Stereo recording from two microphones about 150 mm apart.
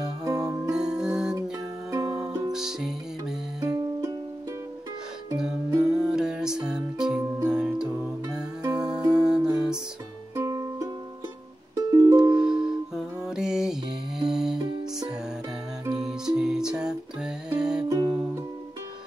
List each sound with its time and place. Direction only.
0.2 s music: 25° right (ahead or behind)
0.7 s music: 5° right (ahead or behind)
1.9 s music: 20° right (ahead or behind)
2.5 s music: 5° right (ahead or behind)
3.6 s music: 25° right (ahead or behind)
5.8 s music: 5° right (ahead or behind)
9.0 s music: 25° right (ahead or behind)
10.3 s music: 20° right (ahead or behind)
12.2 s music: 5° right (ahead or behind)
14.6 s music: 25° right (ahead or behind)
15.9 s music: 5° right (ahead or behind)
17.8 s music: 25° right (ahead or behind)